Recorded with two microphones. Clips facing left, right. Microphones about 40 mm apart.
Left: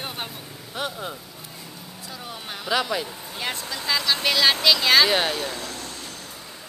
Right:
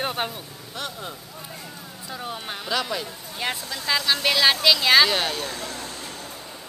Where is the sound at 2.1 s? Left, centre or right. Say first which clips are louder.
Right 4 dB; centre.